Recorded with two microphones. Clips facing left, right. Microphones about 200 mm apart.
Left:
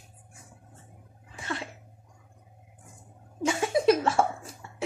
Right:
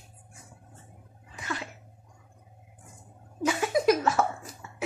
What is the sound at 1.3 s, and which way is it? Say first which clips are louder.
Sneeze: left 1 dB; 30° left (ahead or behind).